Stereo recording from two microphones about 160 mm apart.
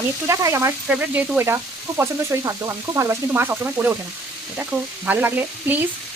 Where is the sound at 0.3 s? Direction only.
20° right (ahead or behind).